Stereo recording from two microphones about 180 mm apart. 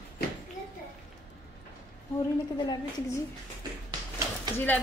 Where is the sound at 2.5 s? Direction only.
20° left (ahead or behind).